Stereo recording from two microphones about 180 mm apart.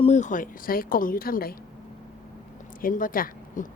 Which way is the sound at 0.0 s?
40° left (ahead or behind).